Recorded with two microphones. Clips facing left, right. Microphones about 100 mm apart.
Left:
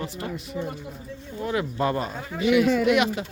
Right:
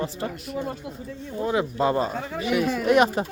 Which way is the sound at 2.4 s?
35° right (ahead or behind).